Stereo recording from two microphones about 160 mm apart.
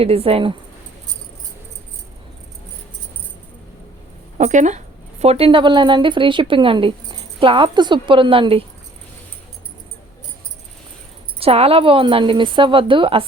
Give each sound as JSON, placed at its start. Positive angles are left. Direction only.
{"t": 0.0, "sound": "a woman's voice", "side_deg": -35}
{"t": 4.4, "sound": "a woman's voice", "side_deg": -50}
{"t": 11.3, "sound": "a woman's voice", "side_deg": -35}